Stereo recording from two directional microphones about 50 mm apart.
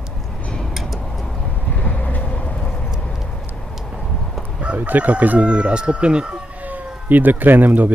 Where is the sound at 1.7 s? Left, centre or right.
Left.